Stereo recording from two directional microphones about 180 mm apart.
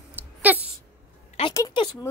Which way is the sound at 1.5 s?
20° left (ahead or behind).